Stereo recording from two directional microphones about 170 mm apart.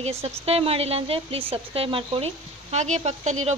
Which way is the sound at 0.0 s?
35° right (ahead or behind).